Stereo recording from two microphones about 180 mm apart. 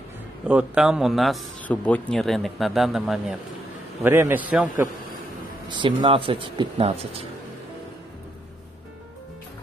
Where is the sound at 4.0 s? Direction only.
10° right (ahead or behind).